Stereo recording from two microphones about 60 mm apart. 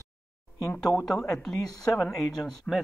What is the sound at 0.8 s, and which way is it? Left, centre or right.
Speech, centre.